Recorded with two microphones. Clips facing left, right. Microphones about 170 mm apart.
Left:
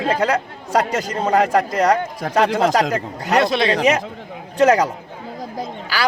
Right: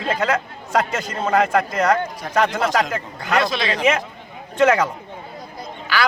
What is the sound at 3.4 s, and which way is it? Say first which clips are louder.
Speech: left 5 dB; 60° left (ahead or behind).